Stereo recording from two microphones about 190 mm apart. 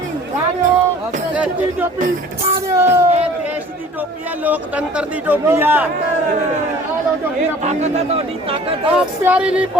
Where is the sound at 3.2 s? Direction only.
10° right (ahead or behind).